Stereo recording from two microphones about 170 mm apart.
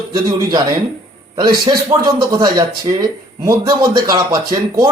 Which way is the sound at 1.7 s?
25° right (ahead or behind).